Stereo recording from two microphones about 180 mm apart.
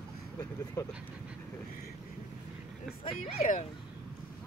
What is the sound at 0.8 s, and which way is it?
Speech, 15° left (ahead or behind).